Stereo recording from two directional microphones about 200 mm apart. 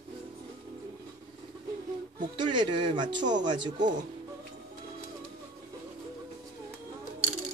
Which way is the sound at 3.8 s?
40° right (ahead or behind).